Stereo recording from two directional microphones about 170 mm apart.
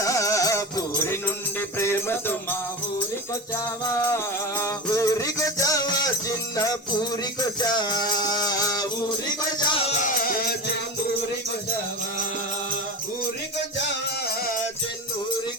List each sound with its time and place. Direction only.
0.0 s music: 20° left (ahead or behind)
4.6 s music: 20° left (ahead or behind)
7.6 s music: 25° left (ahead or behind)